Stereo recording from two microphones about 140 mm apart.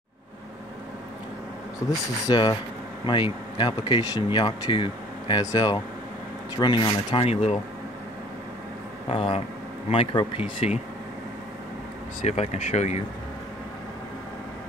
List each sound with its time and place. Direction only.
2.2 s speech: 35° left (ahead or behind)
9.1 s speech: 40° left (ahead or behind)
12.3 s speech: 50° left (ahead or behind)